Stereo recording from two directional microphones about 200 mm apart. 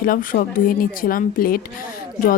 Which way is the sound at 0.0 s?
45° left (ahead or behind).